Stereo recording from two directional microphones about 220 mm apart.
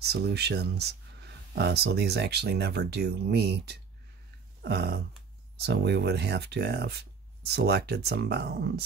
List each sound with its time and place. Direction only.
0.0 s speech: 45° right (ahead or behind)
4.6 s a sound: 45° right (ahead or behind)
5.6 s speech: 50° right (ahead or behind)